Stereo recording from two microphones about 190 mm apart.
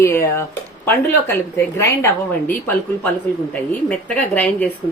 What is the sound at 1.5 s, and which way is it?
Speech, 15° left (ahead or behind).